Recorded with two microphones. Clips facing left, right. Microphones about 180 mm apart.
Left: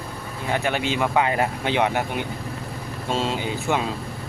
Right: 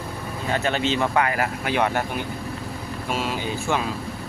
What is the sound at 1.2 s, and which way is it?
Speech, 25° left (ahead or behind).